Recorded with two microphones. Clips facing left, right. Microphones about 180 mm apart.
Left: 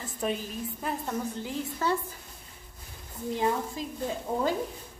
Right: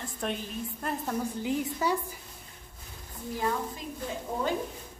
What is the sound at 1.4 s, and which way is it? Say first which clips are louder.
Speech: right 2 dB; 15° right (ahead or behind).